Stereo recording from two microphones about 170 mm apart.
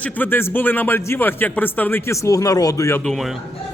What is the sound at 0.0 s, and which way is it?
A man's voice, 10° left (ahead or behind).